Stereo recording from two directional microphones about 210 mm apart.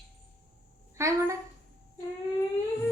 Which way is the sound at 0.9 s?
15° right (ahead or behind).